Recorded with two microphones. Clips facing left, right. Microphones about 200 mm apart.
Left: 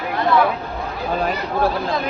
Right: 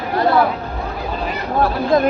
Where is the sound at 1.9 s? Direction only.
45° right (ahead or behind).